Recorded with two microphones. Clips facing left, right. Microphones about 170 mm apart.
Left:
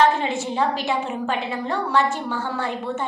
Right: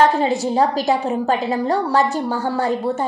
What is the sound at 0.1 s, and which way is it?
A woman's voice, 40° right (ahead or behind).